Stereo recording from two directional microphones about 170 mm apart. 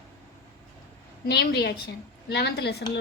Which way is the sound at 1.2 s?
75° left (ahead or behind).